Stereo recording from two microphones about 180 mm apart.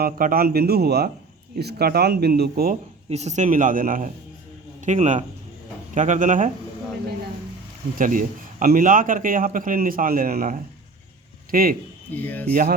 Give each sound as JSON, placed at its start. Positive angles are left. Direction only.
{"t": 0.0, "sound": "speech", "side_deg": -55}
{"t": 3.1, "sound": "a man's voice", "side_deg": -40}
{"t": 7.9, "sound": "a man's voice", "side_deg": -50}
{"t": 12.1, "sound": "speech", "side_deg": 10}